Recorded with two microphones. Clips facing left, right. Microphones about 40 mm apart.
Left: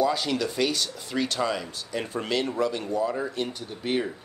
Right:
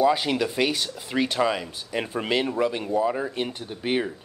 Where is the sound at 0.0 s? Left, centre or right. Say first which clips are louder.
Right 3 dB; right.